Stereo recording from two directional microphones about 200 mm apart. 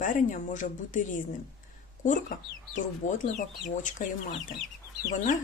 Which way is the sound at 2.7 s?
40° left (ahead or behind).